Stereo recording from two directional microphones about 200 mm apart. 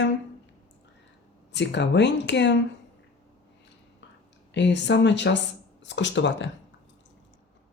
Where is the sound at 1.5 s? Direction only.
60° left (ahead or behind).